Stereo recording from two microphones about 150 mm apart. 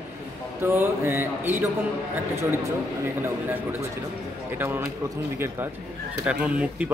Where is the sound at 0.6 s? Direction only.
15° right (ahead or behind).